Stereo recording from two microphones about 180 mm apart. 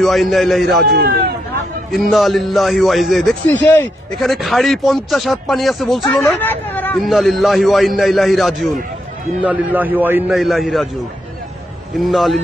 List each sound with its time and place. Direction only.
0.0 s a man's voice: centre (ahead or behind)
0.8 s speech: 60° right (ahead or behind)
1.9 s a man's voice: centre (ahead or behind)
6.4 s speech: 10° left (ahead or behind)
7.1 s a man's voice: centre (ahead or behind)
12.0 s a man's voice: centre (ahead or behind)